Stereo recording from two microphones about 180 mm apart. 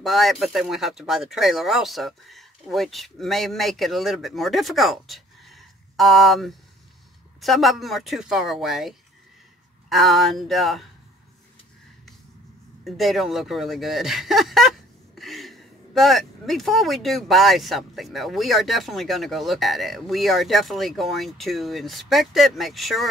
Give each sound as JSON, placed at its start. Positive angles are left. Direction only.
{"t": 0.0, "sound": "speech", "side_deg": 0}
{"t": 12.8, "sound": "speech", "side_deg": 0}